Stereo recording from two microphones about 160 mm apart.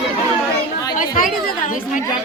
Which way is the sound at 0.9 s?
55° left (ahead or behind).